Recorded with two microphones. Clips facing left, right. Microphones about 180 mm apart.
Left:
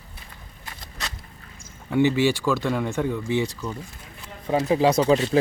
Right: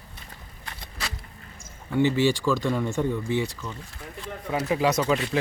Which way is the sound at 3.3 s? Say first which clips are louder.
Left 3 dB; 20° left (ahead or behind).